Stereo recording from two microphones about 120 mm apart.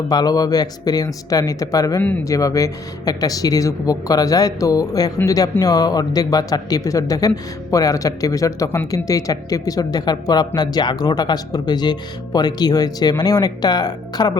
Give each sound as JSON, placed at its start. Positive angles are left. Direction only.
{"t": 0.1, "sound": "speech", "side_deg": 35}
{"t": 2.0, "sound": "speech", "side_deg": 15}
{"t": 2.2, "sound": "speech", "side_deg": 30}